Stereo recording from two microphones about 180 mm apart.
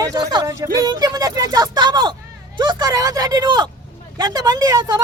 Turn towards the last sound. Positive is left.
turn(degrees=-20)  # may be behind; listen again after turning